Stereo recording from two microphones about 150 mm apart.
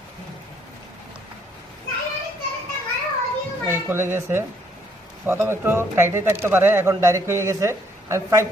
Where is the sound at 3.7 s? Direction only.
15° right (ahead or behind).